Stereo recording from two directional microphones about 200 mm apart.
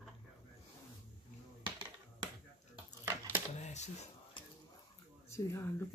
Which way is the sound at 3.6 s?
35° left (ahead or behind).